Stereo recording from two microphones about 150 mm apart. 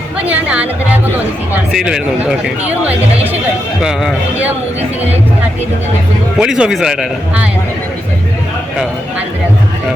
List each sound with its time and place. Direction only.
0.3 s a man's voice: 10° right (ahead or behind)
1.7 s a man's voice: 5° right (ahead or behind)
3.8 s a man's voice: 5° right (ahead or behind)
6.4 s a man's voice: 5° right (ahead or behind)